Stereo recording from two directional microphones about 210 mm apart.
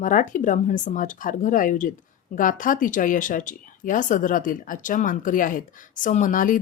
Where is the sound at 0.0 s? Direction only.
40° left (ahead or behind).